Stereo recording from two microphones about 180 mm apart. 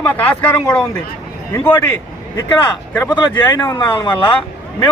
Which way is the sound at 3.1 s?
25° left (ahead or behind).